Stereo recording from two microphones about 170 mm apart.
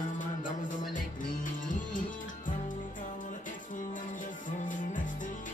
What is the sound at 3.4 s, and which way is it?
Music, 50° left (ahead or behind).